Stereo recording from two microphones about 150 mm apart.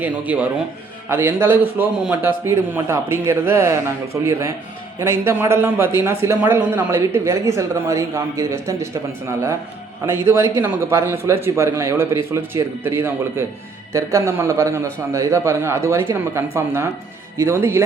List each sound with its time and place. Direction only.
0.0 s a man's voice: 10° right (ahead or behind)
10.1 s a man's voice: 15° right (ahead or behind)